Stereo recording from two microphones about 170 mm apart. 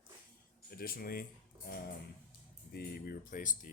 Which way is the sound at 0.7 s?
60° left (ahead or behind).